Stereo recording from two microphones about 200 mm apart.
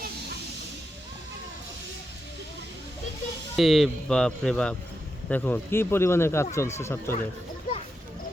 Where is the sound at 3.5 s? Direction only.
Centre (ahead or behind).